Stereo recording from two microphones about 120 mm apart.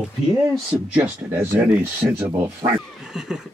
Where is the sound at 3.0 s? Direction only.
5° right (ahead or behind).